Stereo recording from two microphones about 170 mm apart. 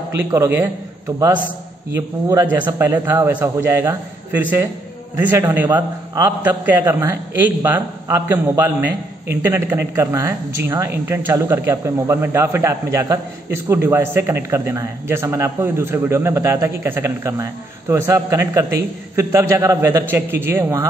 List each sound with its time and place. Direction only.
0.3 s speech: 15° right (ahead or behind)